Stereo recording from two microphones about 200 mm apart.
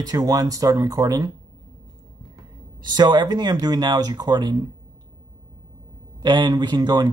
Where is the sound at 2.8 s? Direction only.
20° right (ahead or behind).